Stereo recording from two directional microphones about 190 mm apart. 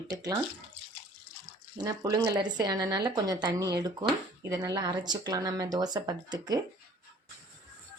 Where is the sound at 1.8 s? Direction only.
20° right (ahead or behind).